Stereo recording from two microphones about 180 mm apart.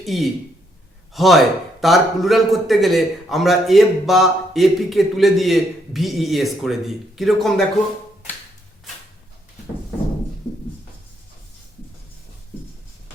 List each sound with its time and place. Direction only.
0.0 s a man's voice: centre (ahead or behind)